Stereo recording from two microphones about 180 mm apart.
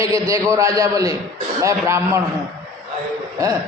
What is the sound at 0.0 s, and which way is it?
A man's voice, 15° right (ahead or behind).